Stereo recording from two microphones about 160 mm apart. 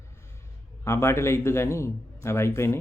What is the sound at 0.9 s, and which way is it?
Speech, 15° left (ahead or behind).